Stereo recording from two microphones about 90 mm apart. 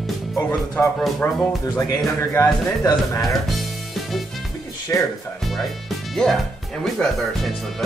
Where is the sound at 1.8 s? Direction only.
40° left (ahead or behind).